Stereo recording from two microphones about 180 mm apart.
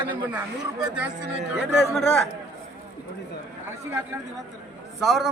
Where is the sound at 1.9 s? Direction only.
5° left (ahead or behind).